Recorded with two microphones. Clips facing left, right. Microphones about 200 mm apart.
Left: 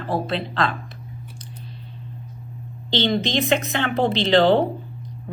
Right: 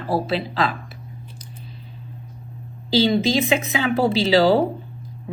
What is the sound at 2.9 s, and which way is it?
Speech, 5° right (ahead or behind).